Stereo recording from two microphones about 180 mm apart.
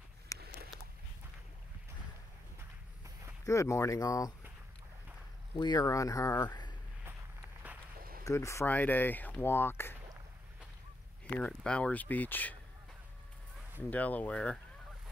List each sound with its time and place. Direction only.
0.3 s a sound: 20° left (ahead or behind)
3.4 s speech: 15° left (ahead or behind)
5.6 s speech: 20° left (ahead or behind)
8.2 s speech: 20° left (ahead or behind)
11.3 s speech: 5° left (ahead or behind)
13.8 s speech: 10° left (ahead or behind)